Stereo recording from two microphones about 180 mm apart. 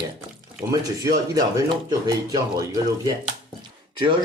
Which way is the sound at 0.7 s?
20° right (ahead or behind).